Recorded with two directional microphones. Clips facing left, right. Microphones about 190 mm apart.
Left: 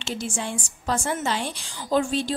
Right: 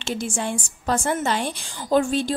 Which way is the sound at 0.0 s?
50° right (ahead or behind).